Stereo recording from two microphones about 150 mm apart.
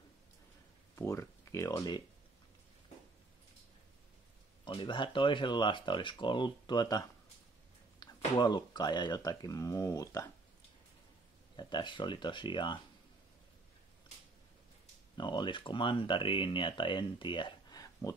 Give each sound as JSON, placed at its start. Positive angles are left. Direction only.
{"t": 0.9, "sound": "speech", "side_deg": 20}
{"t": 4.6, "sound": "speech", "side_deg": 30}
{"t": 11.5, "sound": "speech", "side_deg": 30}
{"t": 15.1, "sound": "speech", "side_deg": 30}